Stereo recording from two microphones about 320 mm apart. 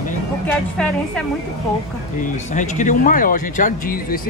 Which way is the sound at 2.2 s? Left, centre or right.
Left.